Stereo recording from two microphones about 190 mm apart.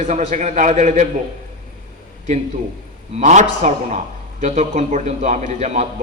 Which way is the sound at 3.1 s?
35° right (ahead or behind).